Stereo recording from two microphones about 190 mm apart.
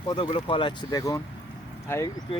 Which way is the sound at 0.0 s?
25° left (ahead or behind).